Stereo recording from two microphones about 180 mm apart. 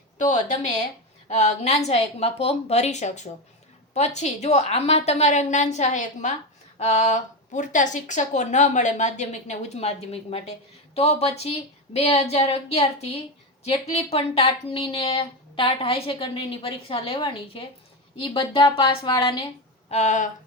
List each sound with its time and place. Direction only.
0.2 s speech: 45° left (ahead or behind); by 19.4 s 25° left (ahead or behind)
19.9 s speech: 40° left (ahead or behind)